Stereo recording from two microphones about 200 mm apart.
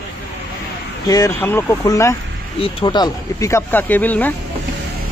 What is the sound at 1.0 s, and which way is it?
Speech, 15° left (ahead or behind).